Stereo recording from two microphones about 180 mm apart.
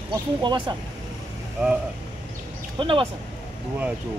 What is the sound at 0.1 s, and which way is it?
Speech, 25° right (ahead or behind).